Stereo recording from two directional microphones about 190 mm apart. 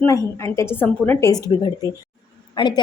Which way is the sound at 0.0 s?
15° left (ahead or behind).